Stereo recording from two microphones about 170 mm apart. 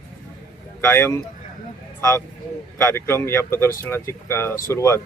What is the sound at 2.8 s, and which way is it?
Speech, 15° left (ahead or behind).